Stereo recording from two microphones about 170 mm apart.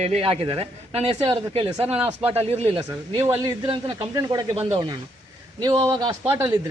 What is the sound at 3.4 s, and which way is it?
Speech, 25° right (ahead or behind).